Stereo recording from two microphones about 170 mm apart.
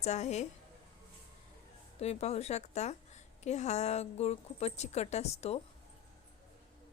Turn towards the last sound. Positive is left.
turn(degrees=40)  # may be behind; listen again after turning